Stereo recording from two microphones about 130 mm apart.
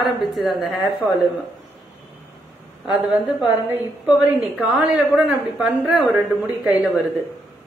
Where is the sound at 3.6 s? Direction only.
15° right (ahead or behind).